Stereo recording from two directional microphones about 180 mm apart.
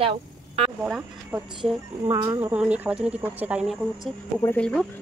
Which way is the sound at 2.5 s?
5° right (ahead or behind).